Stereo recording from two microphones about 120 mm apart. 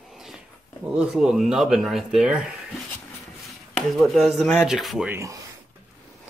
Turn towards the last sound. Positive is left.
turn(degrees=-25)  # may be behind; listen again after turning